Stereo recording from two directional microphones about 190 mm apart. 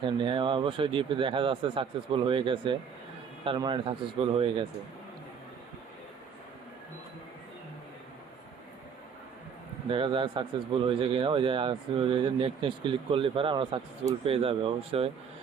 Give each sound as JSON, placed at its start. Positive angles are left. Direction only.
{"t": 0.0, "sound": "speech", "side_deg": -25}
{"t": 9.9, "sound": "speech", "side_deg": -25}